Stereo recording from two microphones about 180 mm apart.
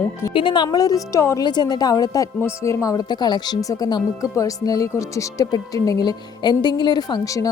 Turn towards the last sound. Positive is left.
turn(degrees=20)  # may be behind; listen again after turning